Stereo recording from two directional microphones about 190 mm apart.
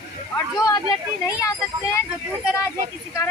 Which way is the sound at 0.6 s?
20° left (ahead or behind).